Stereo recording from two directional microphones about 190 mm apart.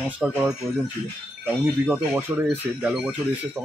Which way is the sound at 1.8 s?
10° right (ahead or behind).